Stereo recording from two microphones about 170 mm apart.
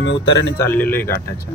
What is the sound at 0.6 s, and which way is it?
Speech, 10° left (ahead or behind).